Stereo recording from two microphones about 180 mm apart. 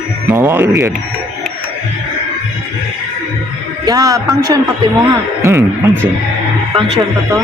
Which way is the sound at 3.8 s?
20° right (ahead or behind).